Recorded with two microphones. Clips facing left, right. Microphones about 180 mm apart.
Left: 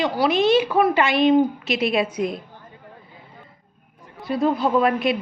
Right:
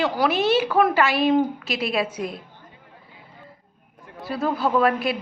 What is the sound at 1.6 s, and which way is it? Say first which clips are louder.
Speech: left 3 dB; centre (ahead or behind).